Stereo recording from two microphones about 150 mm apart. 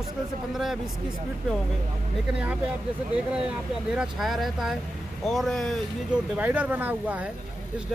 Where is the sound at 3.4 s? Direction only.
5° right (ahead or behind).